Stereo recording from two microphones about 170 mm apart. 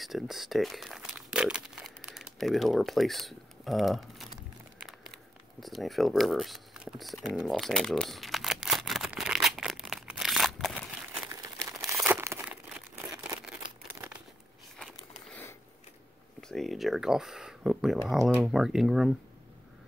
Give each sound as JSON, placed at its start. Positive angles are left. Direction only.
{"t": 0.0, "sound": "speech", "side_deg": 0}
{"t": 5.6, "sound": "typing", "side_deg": 0}
{"t": 11.2, "sound": "crumpling", "side_deg": -20}
{"t": 16.3, "sound": "speech", "side_deg": 0}